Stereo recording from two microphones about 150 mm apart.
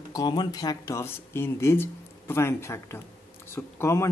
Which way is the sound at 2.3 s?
15° left (ahead or behind).